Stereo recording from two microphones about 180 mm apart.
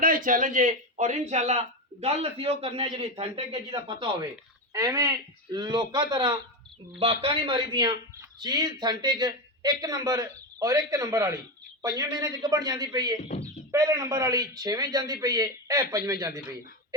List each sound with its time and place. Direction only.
0.0 s a man's voice: 50° right (ahead or behind); by 13.1 s 20° right (ahead or behind)
13.2 s speech: 35° left (ahead or behind)
13.7 s speech: 20° right (ahead or behind)